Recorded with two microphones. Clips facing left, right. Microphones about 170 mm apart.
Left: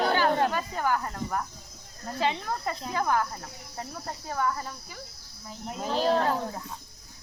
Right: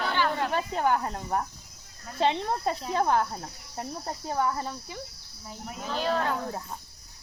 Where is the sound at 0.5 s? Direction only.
20° right (ahead or behind).